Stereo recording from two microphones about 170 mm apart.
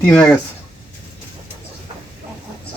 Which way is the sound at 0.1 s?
5° left (ahead or behind).